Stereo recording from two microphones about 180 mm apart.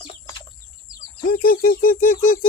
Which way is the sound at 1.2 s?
55° left (ahead or behind).